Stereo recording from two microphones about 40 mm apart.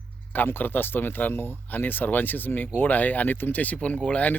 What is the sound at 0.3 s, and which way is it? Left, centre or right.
Speech, left.